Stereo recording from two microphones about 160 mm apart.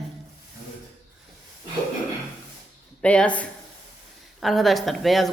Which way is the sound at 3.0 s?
10° left (ahead or behind).